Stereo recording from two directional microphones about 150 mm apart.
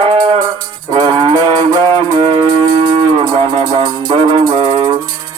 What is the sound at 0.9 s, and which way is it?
Music, 30° right (ahead or behind).